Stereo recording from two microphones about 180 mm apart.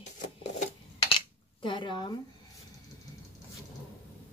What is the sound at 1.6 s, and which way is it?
Speech, 25° left (ahead or behind).